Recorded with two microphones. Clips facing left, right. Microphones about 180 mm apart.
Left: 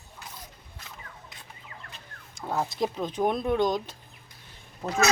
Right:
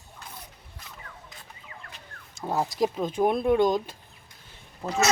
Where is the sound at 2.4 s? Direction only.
20° right (ahead or behind).